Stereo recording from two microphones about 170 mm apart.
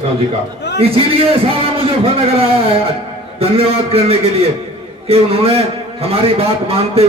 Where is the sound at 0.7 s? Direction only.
35° right (ahead or behind).